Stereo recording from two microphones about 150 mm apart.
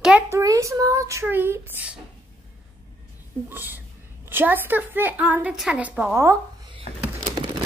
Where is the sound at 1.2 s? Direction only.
15° right (ahead or behind).